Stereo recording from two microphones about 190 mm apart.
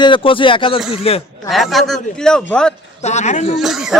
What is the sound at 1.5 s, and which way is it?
A man's voice, centre (ahead or behind).